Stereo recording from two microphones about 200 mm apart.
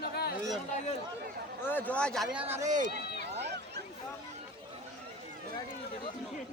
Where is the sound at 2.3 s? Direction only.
10° right (ahead or behind).